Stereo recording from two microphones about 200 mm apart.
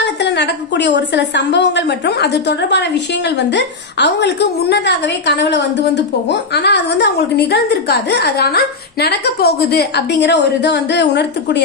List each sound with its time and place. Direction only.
0.0 s a woman's voice: 60° left (ahead or behind)